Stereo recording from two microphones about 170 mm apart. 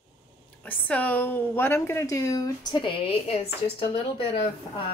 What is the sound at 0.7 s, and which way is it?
A woman's voice, 10° left (ahead or behind).